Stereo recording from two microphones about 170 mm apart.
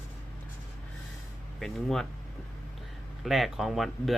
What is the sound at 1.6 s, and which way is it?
Speech, centre (ahead or behind).